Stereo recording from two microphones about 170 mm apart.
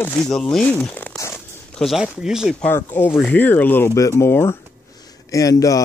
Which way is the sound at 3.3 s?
10° left (ahead or behind).